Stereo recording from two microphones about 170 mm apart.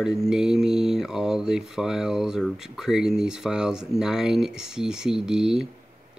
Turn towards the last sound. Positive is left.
turn(degrees=0)  # may be behind; listen again after turning